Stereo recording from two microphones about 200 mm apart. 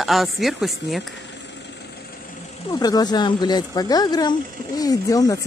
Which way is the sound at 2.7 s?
20° left (ahead or behind).